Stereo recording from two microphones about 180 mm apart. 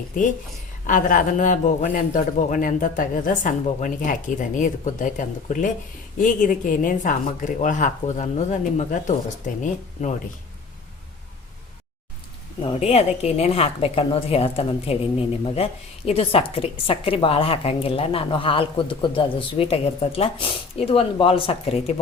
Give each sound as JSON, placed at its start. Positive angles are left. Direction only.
{"t": 0.9, "sound": "a man's voice", "side_deg": 50}
{"t": 12.6, "sound": "a woman's voice", "side_deg": 35}